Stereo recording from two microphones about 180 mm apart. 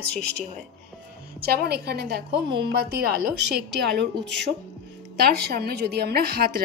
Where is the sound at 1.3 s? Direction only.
60° right (ahead or behind).